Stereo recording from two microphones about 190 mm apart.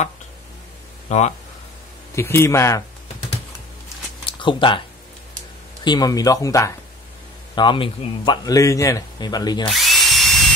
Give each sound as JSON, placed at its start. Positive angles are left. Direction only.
{"t": 1.0, "sound": "speech", "side_deg": 35}
{"t": 2.1, "sound": "speech", "side_deg": 15}
{"t": 4.4, "sound": "speech", "side_deg": 25}
{"t": 5.9, "sound": "a man's voice", "side_deg": 20}
{"t": 9.7, "sound": "drill", "side_deg": 0}